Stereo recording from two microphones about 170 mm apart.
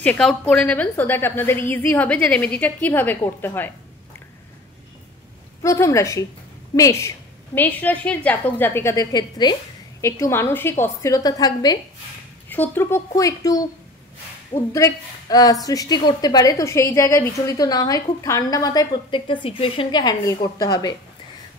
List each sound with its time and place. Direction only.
0.0 s a woman's voice: 5° left (ahead or behind)
5.6 s a woman's voice: 15° left (ahead or behind)
12.4 s a woman's voice: 10° left (ahead or behind)
14.7 s a woman's voice: 20° left (ahead or behind)